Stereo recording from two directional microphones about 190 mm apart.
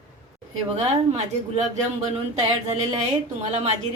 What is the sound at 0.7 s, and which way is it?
Speech, 35° right (ahead or behind).